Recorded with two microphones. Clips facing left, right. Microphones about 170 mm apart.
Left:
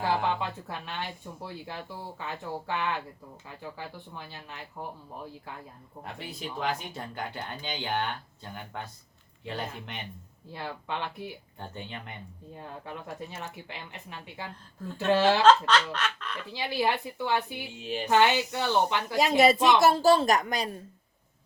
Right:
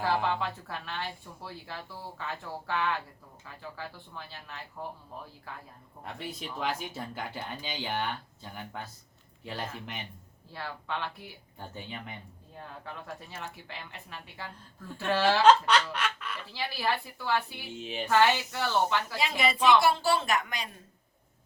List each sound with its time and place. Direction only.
0.0 s speech: 20° left (ahead or behind)
6.1 s speech: centre (ahead or behind)
9.4 s speech: centre (ahead or behind)
10.5 s speech: 20° left (ahead or behind)
11.6 s speech: 5° right (ahead or behind)
12.5 s speech: 15° left (ahead or behind)
15.4 s snicker: 10° right (ahead or behind)
16.5 s speech: 20° left (ahead or behind)
17.7 s speech: centre (ahead or behind)
18.1 s speech: 20° left (ahead or behind)
19.8 s a woman's voice: 40° left (ahead or behind)